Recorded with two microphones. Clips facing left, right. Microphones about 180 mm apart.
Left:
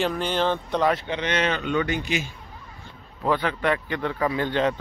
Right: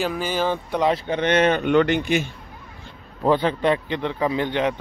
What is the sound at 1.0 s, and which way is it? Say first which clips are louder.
A man's voice: right 6 dB; 50° right (ahead or behind).